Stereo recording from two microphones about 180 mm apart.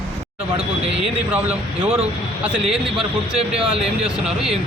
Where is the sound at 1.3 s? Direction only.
10° right (ahead or behind).